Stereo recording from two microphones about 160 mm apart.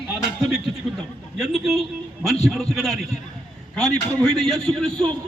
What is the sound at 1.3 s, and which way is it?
A man's voice, centre (ahead or behind).